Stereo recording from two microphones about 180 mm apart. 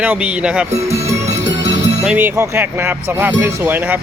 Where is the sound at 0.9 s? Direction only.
15° right (ahead or behind).